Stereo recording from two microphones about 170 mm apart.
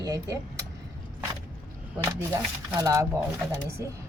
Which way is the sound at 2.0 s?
15° right (ahead or behind).